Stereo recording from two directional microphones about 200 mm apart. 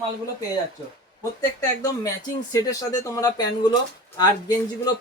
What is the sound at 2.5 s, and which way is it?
Speech, 15° left (ahead or behind).